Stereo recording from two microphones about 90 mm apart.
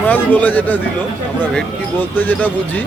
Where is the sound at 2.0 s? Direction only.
20° left (ahead or behind).